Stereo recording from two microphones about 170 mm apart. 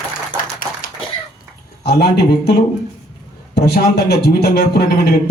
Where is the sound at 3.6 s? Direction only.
70° left (ahead or behind).